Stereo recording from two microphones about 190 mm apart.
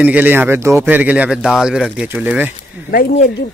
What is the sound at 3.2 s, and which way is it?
Speech, 60° left (ahead or behind).